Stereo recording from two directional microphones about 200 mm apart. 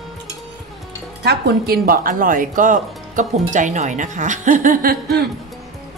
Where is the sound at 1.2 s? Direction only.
55° right (ahead or behind).